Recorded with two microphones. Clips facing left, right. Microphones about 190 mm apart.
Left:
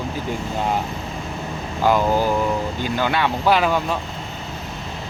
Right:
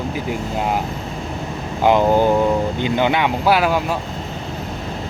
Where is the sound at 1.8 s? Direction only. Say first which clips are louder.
Right 4 dB; 20° right (ahead or behind).